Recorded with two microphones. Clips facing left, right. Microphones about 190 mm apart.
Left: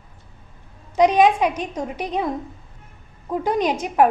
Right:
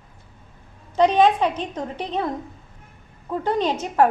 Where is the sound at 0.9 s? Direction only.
10° left (ahead or behind).